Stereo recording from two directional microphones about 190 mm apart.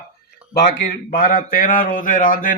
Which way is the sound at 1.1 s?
50° left (ahead or behind).